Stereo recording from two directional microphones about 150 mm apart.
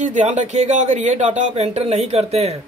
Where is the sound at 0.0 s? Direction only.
55° right (ahead or behind).